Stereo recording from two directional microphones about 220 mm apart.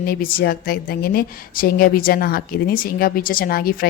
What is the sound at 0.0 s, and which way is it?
A woman's voice, 40° left (ahead or behind).